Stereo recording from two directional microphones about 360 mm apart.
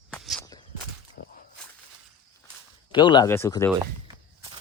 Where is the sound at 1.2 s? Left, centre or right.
Left.